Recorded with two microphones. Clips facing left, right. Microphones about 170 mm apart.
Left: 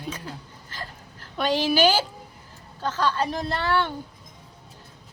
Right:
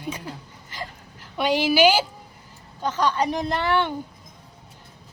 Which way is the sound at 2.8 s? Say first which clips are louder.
Right 2 dB; 15° right (ahead or behind).